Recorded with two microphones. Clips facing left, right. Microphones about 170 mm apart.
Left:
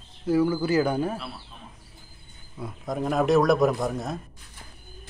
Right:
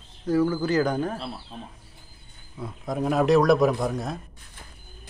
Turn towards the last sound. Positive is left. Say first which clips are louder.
# right 1 dB
turn(degrees=0)  # may be behind; listen again after turning